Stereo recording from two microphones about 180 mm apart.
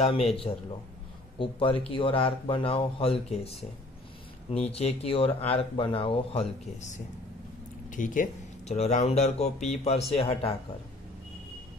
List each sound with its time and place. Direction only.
0.0 s speech: 35° left (ahead or behind)
1.4 s speech: 30° left (ahead or behind)